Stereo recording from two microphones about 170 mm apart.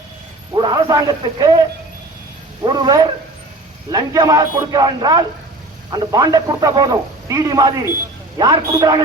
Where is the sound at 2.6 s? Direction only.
25° right (ahead or behind).